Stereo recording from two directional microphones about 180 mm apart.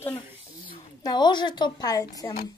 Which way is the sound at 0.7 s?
25° left (ahead or behind).